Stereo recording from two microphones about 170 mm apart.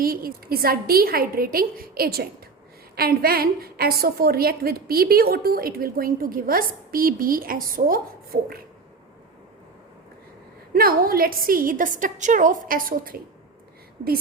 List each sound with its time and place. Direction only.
0.0 s a woman's voice: 60° right (ahead or behind)
10.8 s a woman's voice: 60° right (ahead or behind)